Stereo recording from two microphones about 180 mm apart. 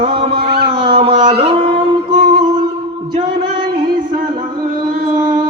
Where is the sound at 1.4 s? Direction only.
30° right (ahead or behind).